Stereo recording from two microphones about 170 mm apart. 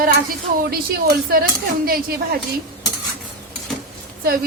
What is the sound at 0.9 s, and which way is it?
A woman's voice, 60° right (ahead or behind).